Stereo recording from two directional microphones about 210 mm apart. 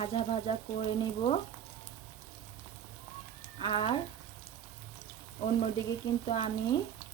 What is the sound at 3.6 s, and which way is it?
Speech, 25° left (ahead or behind).